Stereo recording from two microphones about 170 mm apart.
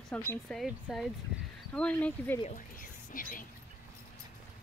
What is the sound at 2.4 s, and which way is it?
Speech, 50° left (ahead or behind).